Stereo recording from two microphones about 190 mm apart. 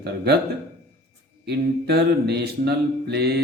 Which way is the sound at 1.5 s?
60° right (ahead or behind).